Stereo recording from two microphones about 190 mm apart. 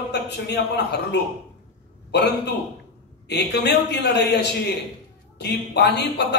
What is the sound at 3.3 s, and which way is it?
Speech, 65° left (ahead or behind).